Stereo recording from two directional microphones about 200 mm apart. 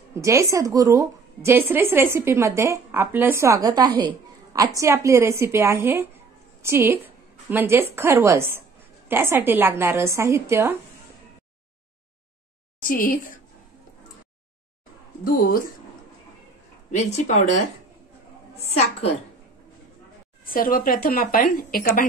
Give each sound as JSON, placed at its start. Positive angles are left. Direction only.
{"t": 0.1, "sound": "a woman's voice", "side_deg": -15}
{"t": 12.8, "sound": "speech", "side_deg": 45}
{"t": 15.2, "sound": "speech", "side_deg": 45}
{"t": 16.9, "sound": "a woman's voice", "side_deg": 35}
{"t": 18.6, "sound": "a woman's voice", "side_deg": 30}
{"t": 20.4, "sound": "speech", "side_deg": 45}